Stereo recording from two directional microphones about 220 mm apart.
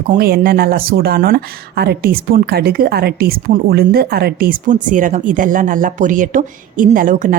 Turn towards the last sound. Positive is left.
turn(degrees=-35)  # may be behind; listen again after turning